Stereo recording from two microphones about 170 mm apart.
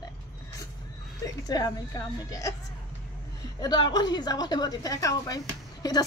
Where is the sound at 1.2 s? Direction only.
20° left (ahead or behind).